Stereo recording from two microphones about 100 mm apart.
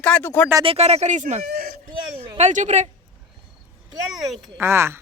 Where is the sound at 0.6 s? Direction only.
90° right.